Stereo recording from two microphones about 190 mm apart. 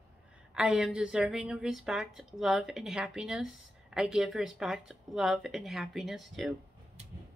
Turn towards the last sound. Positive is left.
turn(degrees=0)  # may be behind; listen again after turning